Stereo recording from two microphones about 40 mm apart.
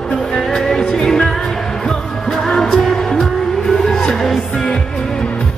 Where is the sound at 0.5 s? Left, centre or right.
Centre.